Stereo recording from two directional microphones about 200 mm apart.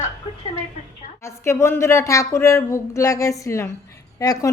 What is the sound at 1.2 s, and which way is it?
Speech, 15° left (ahead or behind).